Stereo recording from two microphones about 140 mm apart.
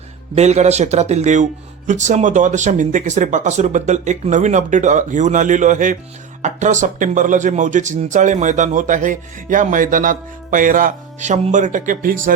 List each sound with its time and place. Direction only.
0.3 s a man's voice: 50° right (ahead or behind); by 12.3 s 70° right (ahead or behind)